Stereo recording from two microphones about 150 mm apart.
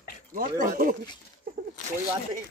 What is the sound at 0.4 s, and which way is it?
Speech, 65° right (ahead or behind).